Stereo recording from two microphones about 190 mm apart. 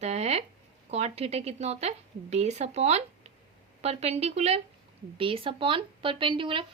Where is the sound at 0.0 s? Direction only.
35° right (ahead or behind).